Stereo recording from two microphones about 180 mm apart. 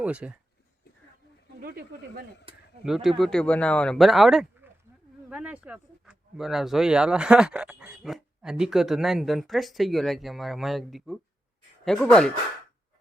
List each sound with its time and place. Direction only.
0.0 s speech: 5° right (ahead or behind)
1.6 s speech: 55° right (ahead or behind)
2.5 s a sound: 30° right (ahead or behind)
2.8 s speech: centre (ahead or behind)